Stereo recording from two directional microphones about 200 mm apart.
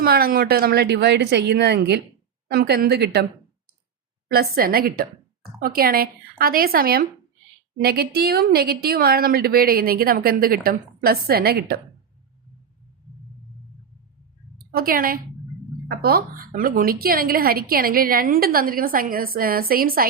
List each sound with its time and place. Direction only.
0.0 s a woman's voice: 50° right (ahead or behind)
4.3 s a woman's voice: 50° right (ahead or behind)
14.7 s a woman's voice: 45° right (ahead or behind)